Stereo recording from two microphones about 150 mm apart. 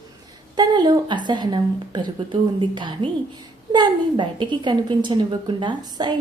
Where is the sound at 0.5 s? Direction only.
30° right (ahead or behind).